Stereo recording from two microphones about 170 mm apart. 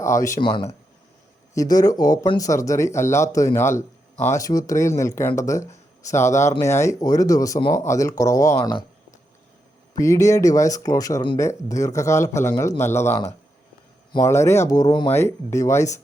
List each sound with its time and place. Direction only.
0.0 s speech: 15° left (ahead or behind)
0.3 s speech: 30° left (ahead or behind)
1.5 s speech: 20° left (ahead or behind)
10.0 s speech: 20° left (ahead or behind)